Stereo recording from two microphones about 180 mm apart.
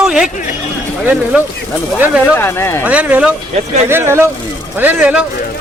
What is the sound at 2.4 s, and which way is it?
Speech, 15° left (ahead or behind).